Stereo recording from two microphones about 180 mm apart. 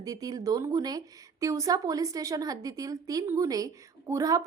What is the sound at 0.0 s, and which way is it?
A woman's voice, 20° right (ahead or behind).